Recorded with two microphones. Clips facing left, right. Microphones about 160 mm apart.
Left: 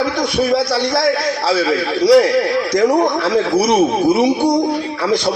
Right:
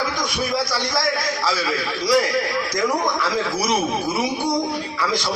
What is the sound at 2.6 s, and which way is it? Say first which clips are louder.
A man's voice: left 8 dB; 60° left (ahead or behind).